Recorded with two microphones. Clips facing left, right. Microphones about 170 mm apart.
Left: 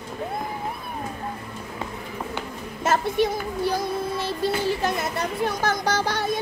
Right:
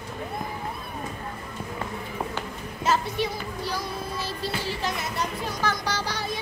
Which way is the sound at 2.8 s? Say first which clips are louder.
Left 4 dB; 50° left (ahead or behind).